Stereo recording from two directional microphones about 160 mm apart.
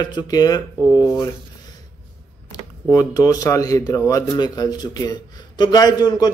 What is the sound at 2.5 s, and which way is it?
Speech, 20° left (ahead or behind).